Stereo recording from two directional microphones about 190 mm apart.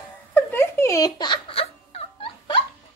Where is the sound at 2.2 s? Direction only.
25° left (ahead or behind).